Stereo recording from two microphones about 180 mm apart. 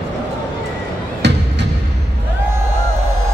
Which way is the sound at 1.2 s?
75° right (ahead or behind).